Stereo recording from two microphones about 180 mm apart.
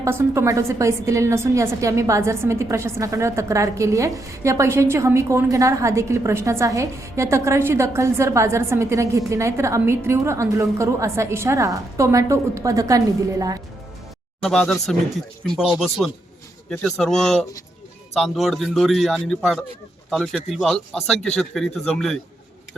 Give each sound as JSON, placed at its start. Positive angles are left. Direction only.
{"t": 0.0, "sound": "a woman's voice", "side_deg": -15}
{"t": 14.4, "sound": "a man's voice", "side_deg": 5}